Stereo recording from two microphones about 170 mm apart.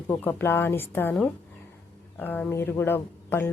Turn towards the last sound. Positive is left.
turn(degrees=10)  # may be behind; listen again after turning